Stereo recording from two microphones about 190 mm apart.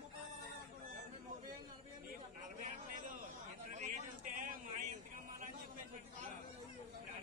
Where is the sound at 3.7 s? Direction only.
40° right (ahead or behind).